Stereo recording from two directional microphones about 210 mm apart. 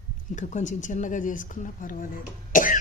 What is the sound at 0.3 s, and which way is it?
Speech, 35° left (ahead or behind).